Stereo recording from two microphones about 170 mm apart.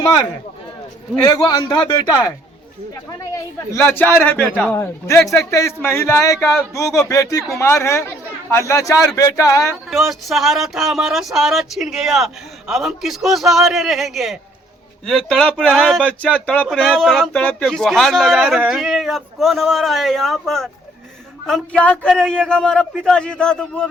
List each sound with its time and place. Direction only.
1.3 s a man's voice: 25° left (ahead or behind)
9.9 s speech: centre (ahead or behind)